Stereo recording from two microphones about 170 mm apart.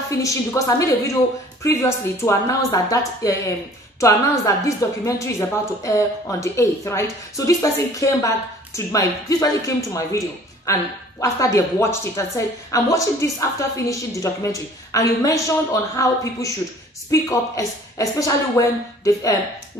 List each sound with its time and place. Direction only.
0.2 s a woman's voice: 20° left (ahead or behind)